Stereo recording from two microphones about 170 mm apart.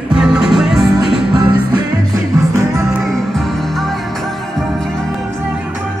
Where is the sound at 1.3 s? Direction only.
25° right (ahead or behind).